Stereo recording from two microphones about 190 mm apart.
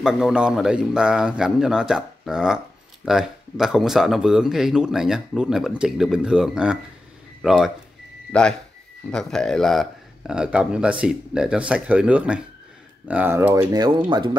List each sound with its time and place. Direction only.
0.0 s speech: 5° right (ahead or behind)
13.7 s speech: 25° right (ahead or behind)